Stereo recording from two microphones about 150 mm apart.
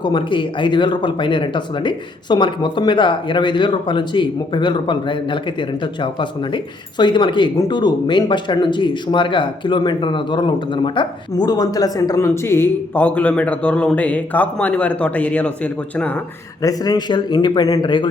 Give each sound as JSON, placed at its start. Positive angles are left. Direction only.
{"t": 0.0, "sound": "speech", "side_deg": 35}
{"t": 16.6, "sound": "speech", "side_deg": 25}